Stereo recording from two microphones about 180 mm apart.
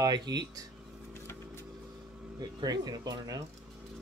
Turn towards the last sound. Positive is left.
turn(degrees=-20)  # may be behind; listen again after turning